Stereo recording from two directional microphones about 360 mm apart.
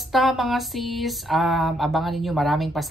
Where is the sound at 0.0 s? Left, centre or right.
Centre.